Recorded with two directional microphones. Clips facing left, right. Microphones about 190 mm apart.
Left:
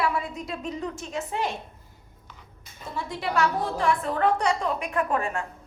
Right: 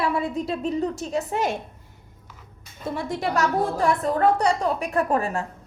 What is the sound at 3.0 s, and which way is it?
A woman's voice, 45° right (ahead or behind).